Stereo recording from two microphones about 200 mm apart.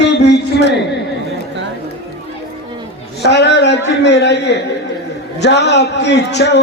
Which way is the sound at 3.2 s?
60° left (ahead or behind).